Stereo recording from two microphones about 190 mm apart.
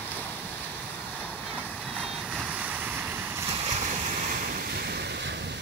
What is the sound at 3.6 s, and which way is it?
Waves, 35° right (ahead or behind).